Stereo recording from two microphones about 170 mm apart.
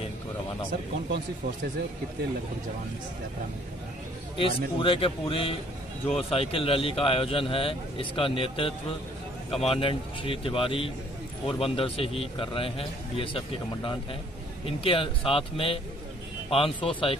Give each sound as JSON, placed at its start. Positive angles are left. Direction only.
{"t": 4.4, "sound": "a man's voice", "side_deg": 30}
{"t": 14.7, "sound": "a man's voice", "side_deg": 30}